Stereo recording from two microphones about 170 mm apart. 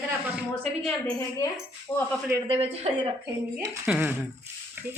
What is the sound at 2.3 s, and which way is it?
Speech, 25° right (ahead or behind).